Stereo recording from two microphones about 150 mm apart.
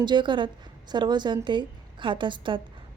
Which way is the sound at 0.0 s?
30° right (ahead or behind).